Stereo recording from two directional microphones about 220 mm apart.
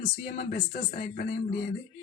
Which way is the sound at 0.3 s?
40° left (ahead or behind).